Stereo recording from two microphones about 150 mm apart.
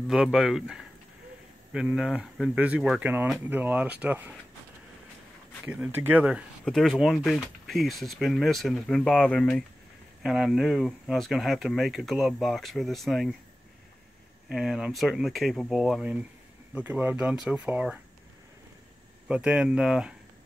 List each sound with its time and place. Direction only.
0.1 s speech: 5° right (ahead or behind)
5.7 s speech: 10° right (ahead or behind); by 9.7 s 10° left (ahead or behind)
10.2 s speech: centre (ahead or behind)
14.5 s speech: centre (ahead or behind)
19.2 s speech: 5° right (ahead or behind)